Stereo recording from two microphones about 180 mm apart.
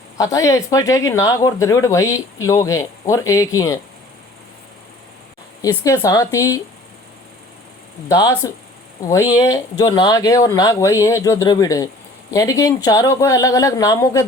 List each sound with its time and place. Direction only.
0.2 s speech: 15° left (ahead or behind)
5.6 s speech: 15° left (ahead or behind)
8.0 s speech: 20° left (ahead or behind)
9.7 s speech: 20° left (ahead or behind)